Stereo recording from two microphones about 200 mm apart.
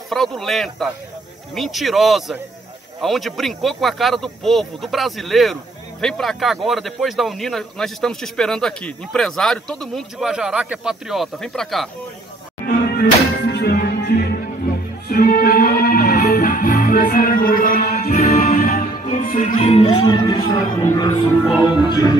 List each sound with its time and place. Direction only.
0.1 s speech: centre (ahead or behind)
12.6 s music: 50° left (ahead or behind); by 19.9 s 30° left (ahead or behind)
19.9 s speech: 25° left (ahead or behind)